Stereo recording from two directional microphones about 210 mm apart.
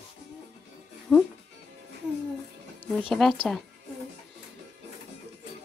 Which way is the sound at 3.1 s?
Centre (ahead or behind).